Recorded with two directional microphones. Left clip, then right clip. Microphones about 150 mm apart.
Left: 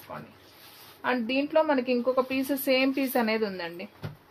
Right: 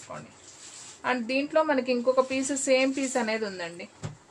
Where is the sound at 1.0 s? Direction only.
30° left (ahead or behind).